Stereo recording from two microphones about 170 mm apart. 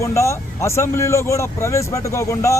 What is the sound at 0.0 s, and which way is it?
Speech, 15° left (ahead or behind).